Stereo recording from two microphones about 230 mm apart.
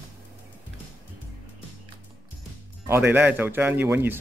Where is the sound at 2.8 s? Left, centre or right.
Centre.